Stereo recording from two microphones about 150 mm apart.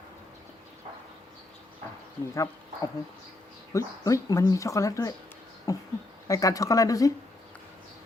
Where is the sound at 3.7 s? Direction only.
20° left (ahead or behind).